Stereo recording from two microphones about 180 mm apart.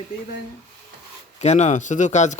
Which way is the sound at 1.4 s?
40° left (ahead or behind).